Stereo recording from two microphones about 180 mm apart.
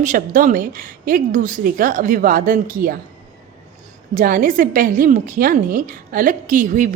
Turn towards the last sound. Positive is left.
turn(degrees=-45)  # may be behind; listen again after turning